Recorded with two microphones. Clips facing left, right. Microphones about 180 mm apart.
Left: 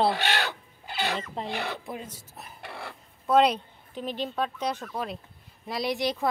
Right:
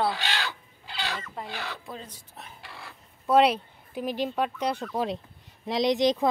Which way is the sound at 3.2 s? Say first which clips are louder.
Right 1 dB; 5° right (ahead or behind).